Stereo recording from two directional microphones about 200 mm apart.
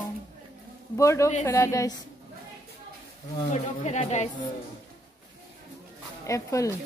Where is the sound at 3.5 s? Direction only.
35° left (ahead or behind).